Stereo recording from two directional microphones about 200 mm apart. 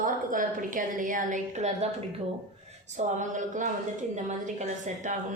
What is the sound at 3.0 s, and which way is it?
A woman's voice, 35° right (ahead or behind).